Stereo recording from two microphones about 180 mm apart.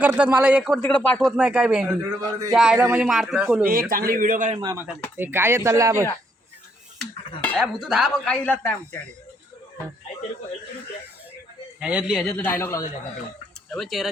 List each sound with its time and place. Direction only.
0.0 s speech: 5° right (ahead or behind)
0.8 s speech: 5° left (ahead or behind)
1.4 s speech: 10° right (ahead or behind)
3.7 s a man's voice: 55° right (ahead or behind)
4.6 s speech: 20° right (ahead or behind)
7.0 s speech: centre (ahead or behind)
11.8 s speech: 5° right (ahead or behind)
12.3 s speech: 10° left (ahead or behind)
13.7 s speech: centre (ahead or behind)